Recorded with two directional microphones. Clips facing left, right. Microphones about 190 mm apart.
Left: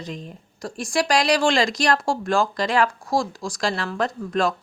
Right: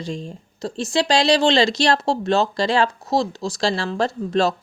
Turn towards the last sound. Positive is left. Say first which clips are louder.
# right 3 dB
turn(degrees=-25)  # may be behind; listen again after turning